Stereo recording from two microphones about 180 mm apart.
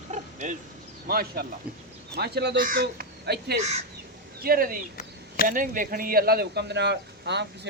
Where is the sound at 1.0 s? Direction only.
60° right (ahead or behind).